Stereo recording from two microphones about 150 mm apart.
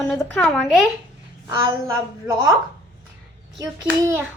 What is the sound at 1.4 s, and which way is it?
Speech, 20° right (ahead or behind).